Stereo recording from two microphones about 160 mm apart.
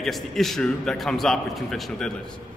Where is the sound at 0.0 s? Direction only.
Centre (ahead or behind).